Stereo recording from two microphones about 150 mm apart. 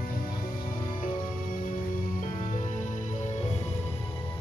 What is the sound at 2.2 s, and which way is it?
Music, 55° left (ahead or behind).